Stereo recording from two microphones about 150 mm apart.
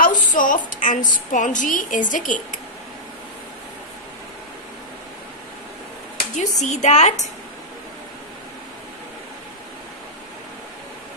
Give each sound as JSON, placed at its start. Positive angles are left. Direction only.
{"t": 0.0, "sound": "a woman's voice", "side_deg": 60}
{"t": 6.3, "sound": "a woman's voice", "side_deg": 50}